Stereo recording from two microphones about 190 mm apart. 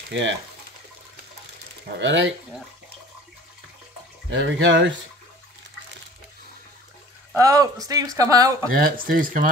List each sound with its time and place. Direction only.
0.1 s speech: 75° right (ahead or behind)
2.0 s speech: 75° right (ahead or behind)
4.3 s speech: 75° right (ahead or behind)
7.3 s speech: 20° right (ahead or behind)
8.7 s speech: 50° right (ahead or behind)